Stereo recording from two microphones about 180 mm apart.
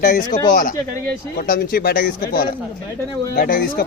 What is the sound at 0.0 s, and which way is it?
Speech, 45° left (ahead or behind).